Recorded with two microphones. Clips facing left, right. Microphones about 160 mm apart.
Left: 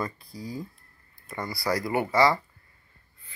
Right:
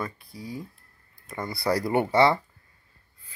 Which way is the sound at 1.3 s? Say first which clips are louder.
Right 2 dB; 25° right (ahead or behind).